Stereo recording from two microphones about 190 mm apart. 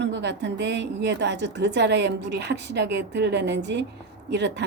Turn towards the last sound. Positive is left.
turn(degrees=-65)  # may be behind; listen again after turning